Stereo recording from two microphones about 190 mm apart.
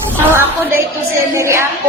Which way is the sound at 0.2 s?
10° right (ahead or behind).